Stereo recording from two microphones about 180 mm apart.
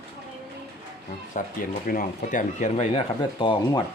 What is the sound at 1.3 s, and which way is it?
Speech, 50° left (ahead or behind).